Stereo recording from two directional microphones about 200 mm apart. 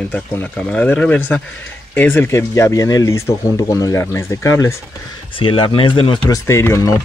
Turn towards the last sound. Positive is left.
turn(degrees=15)  # may be behind; listen again after turning